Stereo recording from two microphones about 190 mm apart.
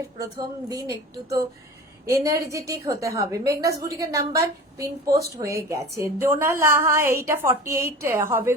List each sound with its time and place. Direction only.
0.2 s a woman's voice: 20° right (ahead or behind)